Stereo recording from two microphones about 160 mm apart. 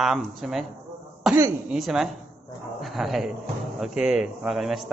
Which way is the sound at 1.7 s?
Centre (ahead or behind).